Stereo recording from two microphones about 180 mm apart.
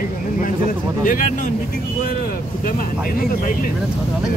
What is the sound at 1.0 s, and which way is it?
Speech, 50° left (ahead or behind).